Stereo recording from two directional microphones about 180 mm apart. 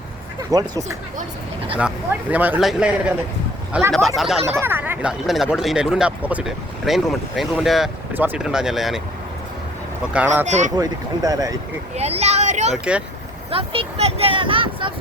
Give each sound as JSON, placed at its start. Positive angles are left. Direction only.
{"t": 0.5, "sound": "speech", "side_deg": -20}
{"t": 2.3, "sound": "speech", "side_deg": -10}
{"t": 3.9, "sound": "speech", "side_deg": 0}
{"t": 4.6, "sound": "speech", "side_deg": -10}
{"t": 10.1, "sound": "speech", "side_deg": -5}
{"t": 10.4, "sound": "speech", "side_deg": -40}
{"t": 10.8, "sound": "speech", "side_deg": -20}
{"t": 11.9, "sound": "speech", "side_deg": -35}
{"t": 12.7, "sound": "speech", "side_deg": -5}
{"t": 13.5, "sound": "speech", "side_deg": -30}